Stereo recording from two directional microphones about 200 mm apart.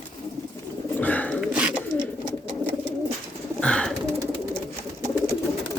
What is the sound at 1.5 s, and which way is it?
Bird, 5° right (ahead or behind).